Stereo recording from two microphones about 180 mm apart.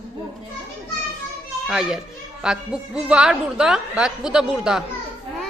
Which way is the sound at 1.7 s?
5° right (ahead or behind).